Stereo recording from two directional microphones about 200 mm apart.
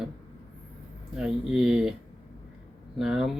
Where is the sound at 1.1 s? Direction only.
5° right (ahead or behind).